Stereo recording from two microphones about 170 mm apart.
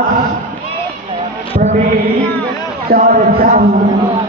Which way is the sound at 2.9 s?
60° right (ahead or behind).